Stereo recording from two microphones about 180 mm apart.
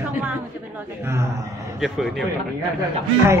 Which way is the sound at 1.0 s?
15° right (ahead or behind).